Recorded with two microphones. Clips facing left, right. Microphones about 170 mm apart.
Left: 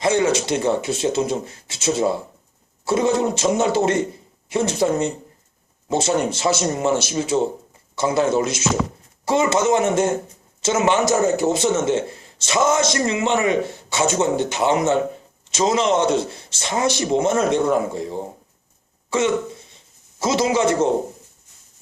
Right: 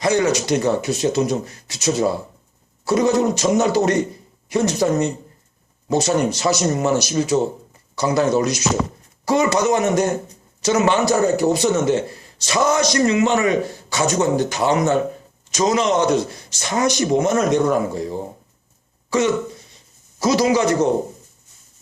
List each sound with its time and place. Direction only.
0.0 s a man's voice: 25° left (ahead or behind)